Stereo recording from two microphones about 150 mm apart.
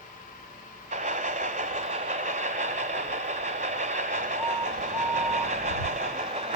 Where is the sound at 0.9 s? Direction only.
55° right (ahead or behind).